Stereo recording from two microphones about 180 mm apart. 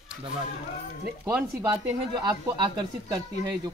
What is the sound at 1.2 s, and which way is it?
A man's voice, 10° right (ahead or behind).